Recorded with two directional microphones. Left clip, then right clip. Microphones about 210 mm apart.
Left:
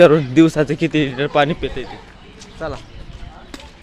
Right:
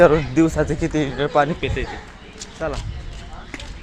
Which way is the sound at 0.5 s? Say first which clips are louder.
Left 3 dB; 65° left (ahead or behind).